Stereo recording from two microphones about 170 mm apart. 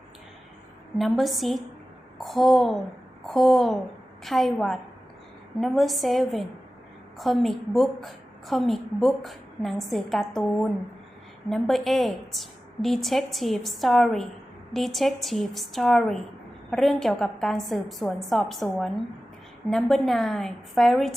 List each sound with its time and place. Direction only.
0.9 s a woman's voice: centre (ahead or behind)